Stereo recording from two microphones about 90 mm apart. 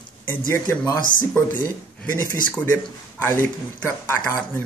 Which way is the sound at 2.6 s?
20° left (ahead or behind).